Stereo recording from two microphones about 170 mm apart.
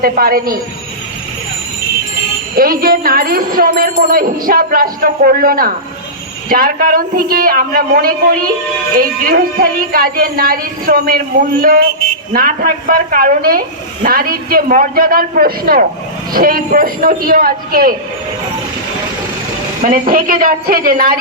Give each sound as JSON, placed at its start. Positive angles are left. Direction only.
{"t": 0.0, "sound": "a woman's voice", "side_deg": -60}
{"t": 2.6, "sound": "a woman's voice", "side_deg": -55}
{"t": 12.3, "sound": "a woman's voice", "side_deg": -60}
{"t": 19.8, "sound": "a woman's voice", "side_deg": -55}